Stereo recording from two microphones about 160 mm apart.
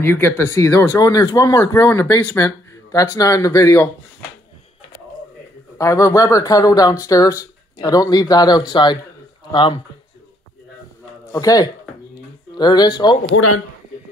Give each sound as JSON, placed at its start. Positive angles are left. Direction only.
{"t": 0.0, "sound": "speech", "side_deg": 15}
{"t": 5.8, "sound": "speech", "side_deg": 20}
{"t": 11.3, "sound": "speech", "side_deg": 20}